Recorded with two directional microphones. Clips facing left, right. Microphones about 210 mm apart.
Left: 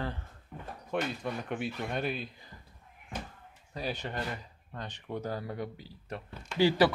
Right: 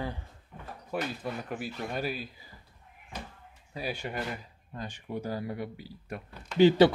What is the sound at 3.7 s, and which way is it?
Speech, 10° right (ahead or behind).